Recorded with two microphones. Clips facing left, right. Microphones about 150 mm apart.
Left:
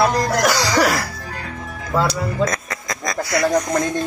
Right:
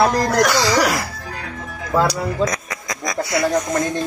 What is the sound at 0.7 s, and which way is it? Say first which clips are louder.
Speech: left 1 dB; 15° right (ahead or behind).